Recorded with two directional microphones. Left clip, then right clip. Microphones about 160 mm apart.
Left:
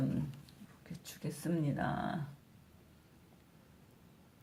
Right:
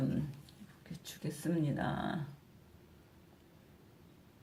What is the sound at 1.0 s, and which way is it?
Speech, 15° left (ahead or behind).